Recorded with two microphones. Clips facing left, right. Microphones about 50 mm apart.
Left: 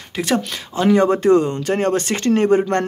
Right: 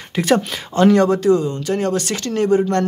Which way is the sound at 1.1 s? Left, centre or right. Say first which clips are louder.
Left 1 dB; left.